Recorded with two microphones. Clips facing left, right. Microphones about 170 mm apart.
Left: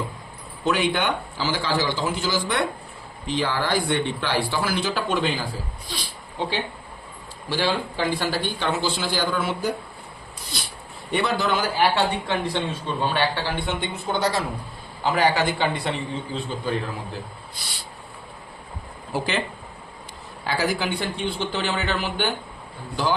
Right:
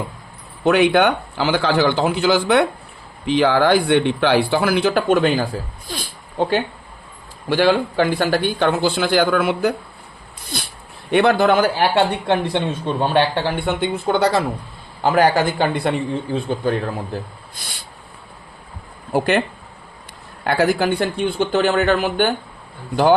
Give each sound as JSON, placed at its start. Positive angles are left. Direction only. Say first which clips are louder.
{"t": 0.6, "sound": "speech", "louder": "right 8 dB", "side_deg": -60}
{"t": 5.9, "sound": "a sound", "louder": "right 4 dB", "side_deg": -50}
{"t": 7.5, "sound": "speech", "louder": "right 9 dB", "side_deg": -60}
{"t": 15.0, "sound": "a man's voice", "louder": "right 5 dB", "side_deg": -50}
{"t": 19.1, "sound": "speech", "louder": "right 9 dB", "side_deg": -60}
{"t": 20.4, "sound": "a man's voice", "louder": "right 7 dB", "side_deg": -60}